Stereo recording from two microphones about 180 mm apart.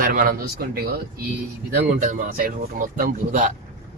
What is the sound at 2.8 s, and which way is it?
Speech, 45° right (ahead or behind).